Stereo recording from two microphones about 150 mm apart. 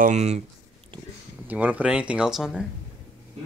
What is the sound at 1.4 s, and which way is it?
Speech, 10° right (ahead or behind).